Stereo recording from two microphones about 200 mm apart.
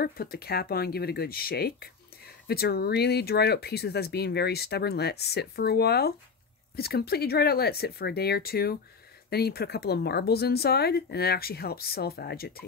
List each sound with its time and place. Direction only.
0.0 s speech: 50° left (ahead or behind)